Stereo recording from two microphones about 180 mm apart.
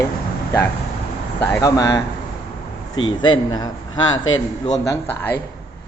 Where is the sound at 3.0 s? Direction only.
90° left.